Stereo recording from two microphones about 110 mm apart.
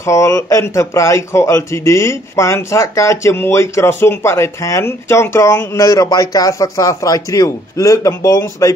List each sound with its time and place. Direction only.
0.0 s a man's voice: 25° left (ahead or behind)